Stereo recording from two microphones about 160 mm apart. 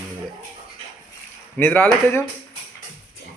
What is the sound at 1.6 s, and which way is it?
Speech, 15° left (ahead or behind).